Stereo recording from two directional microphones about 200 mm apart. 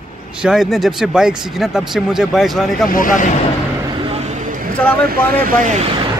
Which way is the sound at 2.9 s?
40° left (ahead or behind).